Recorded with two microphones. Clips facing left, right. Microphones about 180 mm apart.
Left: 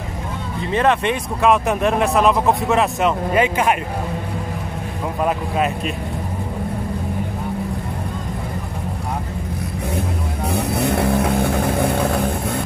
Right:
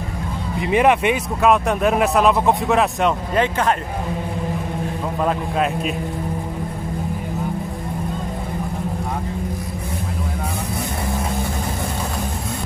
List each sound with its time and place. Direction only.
0.6 s speech: 10° right (ahead or behind); by 3.7 s 10° left (ahead or behind)
10.7 s vehicle: 65° left (ahead or behind)